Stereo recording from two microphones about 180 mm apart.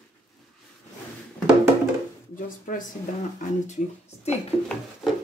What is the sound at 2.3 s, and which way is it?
Speech, 50° left (ahead or behind).